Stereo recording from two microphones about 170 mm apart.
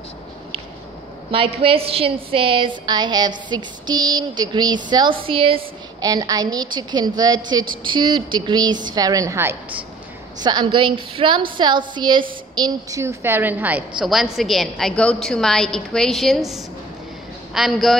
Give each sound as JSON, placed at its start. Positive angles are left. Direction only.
{"t": 1.3, "sound": "a woman's voice", "side_deg": -35}
{"t": 10.4, "sound": "a woman's voice", "side_deg": -25}